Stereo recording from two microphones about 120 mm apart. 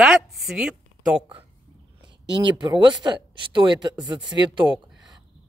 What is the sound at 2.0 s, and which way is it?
Speech, 40° right (ahead or behind).